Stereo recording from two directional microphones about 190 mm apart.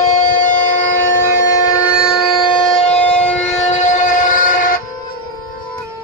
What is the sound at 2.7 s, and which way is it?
Civil defense siren, 30° left (ahead or behind).